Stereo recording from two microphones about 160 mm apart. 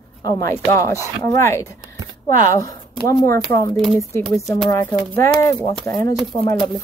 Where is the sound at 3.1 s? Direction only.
20° left (ahead or behind).